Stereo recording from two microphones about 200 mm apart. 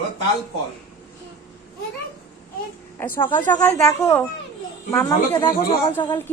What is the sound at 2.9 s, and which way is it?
Speech, 10° left (ahead or behind).